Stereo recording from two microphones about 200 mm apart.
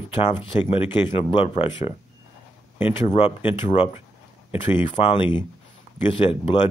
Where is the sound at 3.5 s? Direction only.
25° left (ahead or behind).